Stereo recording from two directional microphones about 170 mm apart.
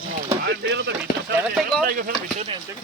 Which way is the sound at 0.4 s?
85° right.